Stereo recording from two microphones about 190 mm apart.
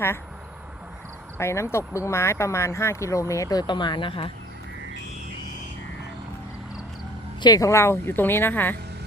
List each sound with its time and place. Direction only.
1.4 s speech: 15° left (ahead or behind)
7.4 s speech: 20° left (ahead or behind)